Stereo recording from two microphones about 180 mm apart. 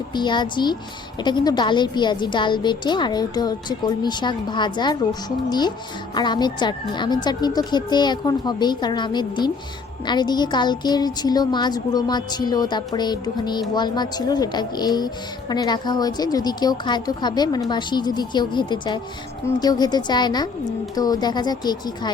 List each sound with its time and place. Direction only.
0.1 s a woman's voice: 25° left (ahead or behind)